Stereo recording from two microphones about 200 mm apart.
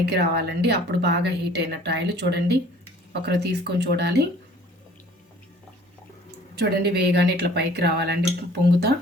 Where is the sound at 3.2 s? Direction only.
55° right (ahead or behind).